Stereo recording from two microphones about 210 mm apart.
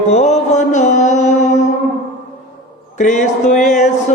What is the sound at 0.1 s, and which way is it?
Mantra, 30° left (ahead or behind).